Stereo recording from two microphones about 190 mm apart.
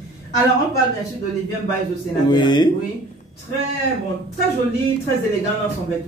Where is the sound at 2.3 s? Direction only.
25° left (ahead or behind).